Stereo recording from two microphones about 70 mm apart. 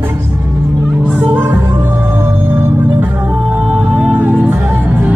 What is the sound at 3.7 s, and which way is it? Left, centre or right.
Music, right.